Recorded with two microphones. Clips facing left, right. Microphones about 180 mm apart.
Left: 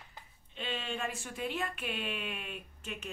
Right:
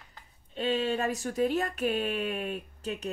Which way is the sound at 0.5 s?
40° right (ahead or behind).